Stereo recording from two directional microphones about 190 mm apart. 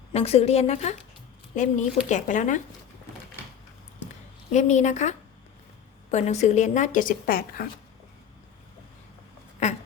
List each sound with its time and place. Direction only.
0.1 s speech: 35° left (ahead or behind)
4.5 s speech: 40° left (ahead or behind)
9.6 s a sound: 35° left (ahead or behind)